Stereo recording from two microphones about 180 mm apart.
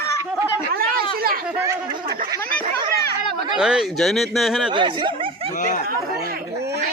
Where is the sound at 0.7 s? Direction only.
55° right (ahead or behind).